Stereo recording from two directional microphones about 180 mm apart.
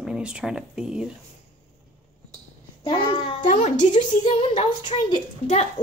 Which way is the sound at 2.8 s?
25° left (ahead or behind).